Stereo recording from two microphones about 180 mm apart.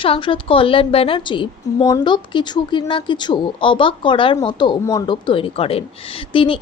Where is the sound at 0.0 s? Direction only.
30° left (ahead or behind).